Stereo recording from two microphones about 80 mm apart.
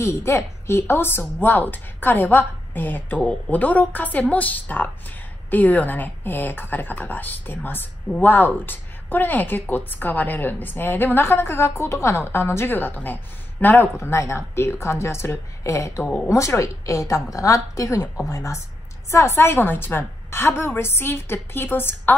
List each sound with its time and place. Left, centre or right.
0.0 s a woman's voice: left
13.9 s a woman's voice: left